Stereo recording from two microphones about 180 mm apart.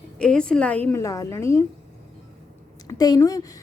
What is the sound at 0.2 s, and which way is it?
A woman's voice, 5° left (ahead or behind).